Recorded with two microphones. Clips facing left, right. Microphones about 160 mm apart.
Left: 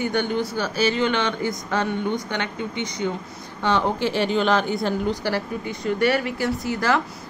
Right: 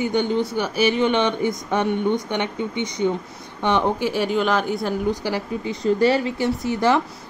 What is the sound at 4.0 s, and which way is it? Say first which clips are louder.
Speech: even; 5° right (ahead or behind).